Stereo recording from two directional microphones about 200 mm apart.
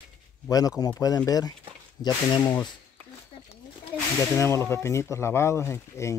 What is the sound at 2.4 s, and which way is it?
Speech, 10° left (ahead or behind).